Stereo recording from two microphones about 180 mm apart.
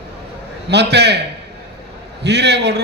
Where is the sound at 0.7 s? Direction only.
70° right (ahead or behind).